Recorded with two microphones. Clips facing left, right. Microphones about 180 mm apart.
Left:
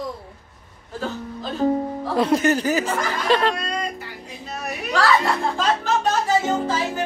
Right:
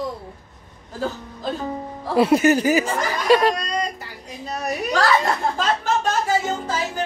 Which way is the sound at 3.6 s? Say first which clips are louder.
Right 2 dB; 40° right (ahead or behind).